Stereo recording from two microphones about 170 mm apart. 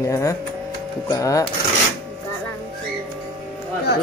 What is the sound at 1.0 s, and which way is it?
Mantra, 20° left (ahead or behind).